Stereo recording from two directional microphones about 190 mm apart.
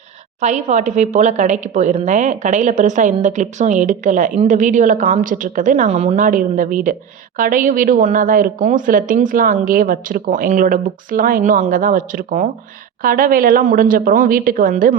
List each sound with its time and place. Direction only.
0.4 s a woman's voice: 40° right (ahead or behind)